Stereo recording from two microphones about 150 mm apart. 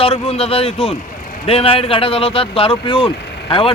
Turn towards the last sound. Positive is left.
turn(degrees=35)  # may be behind; listen again after turning